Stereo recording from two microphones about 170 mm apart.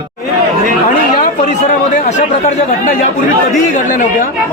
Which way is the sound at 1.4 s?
45° left (ahead or behind).